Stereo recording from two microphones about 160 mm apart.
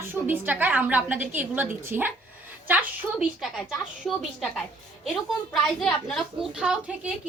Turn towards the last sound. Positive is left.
turn(degrees=-5)  # may be behind; listen again after turning